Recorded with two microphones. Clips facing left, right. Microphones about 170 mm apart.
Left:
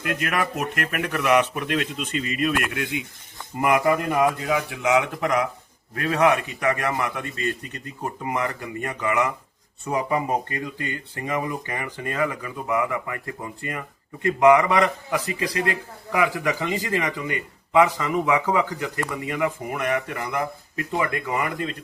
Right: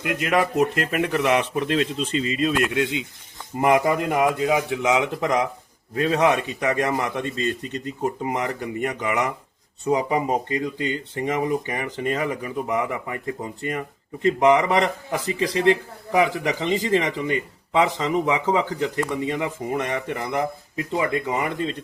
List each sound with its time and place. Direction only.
0.0 s speech: 20° right (ahead or behind)